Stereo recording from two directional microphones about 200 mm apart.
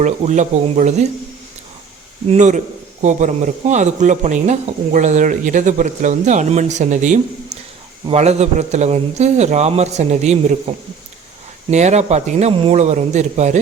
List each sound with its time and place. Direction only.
0.0 s speech: 35° right (ahead or behind)
2.3 s speech: 35° right (ahead or behind)